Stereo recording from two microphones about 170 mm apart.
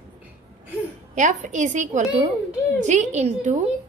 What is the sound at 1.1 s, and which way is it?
A woman's voice, 45° right (ahead or behind).